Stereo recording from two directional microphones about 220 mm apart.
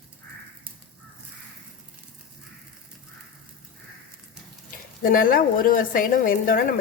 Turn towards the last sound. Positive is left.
turn(degrees=40)  # may be behind; listen again after turning